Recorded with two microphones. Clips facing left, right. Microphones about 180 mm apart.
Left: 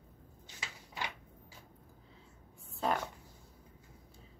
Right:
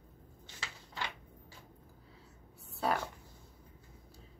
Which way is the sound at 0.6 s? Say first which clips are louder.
Even; 15° left (ahead or behind).